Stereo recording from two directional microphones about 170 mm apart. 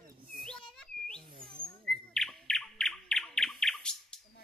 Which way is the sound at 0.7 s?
5° left (ahead or behind).